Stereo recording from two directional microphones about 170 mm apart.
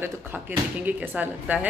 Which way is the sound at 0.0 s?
10° right (ahead or behind).